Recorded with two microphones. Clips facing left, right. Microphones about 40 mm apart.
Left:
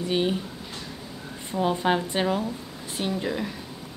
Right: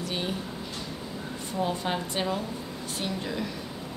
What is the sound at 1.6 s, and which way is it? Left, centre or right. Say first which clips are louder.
A woman's voice: left 6 dB; left.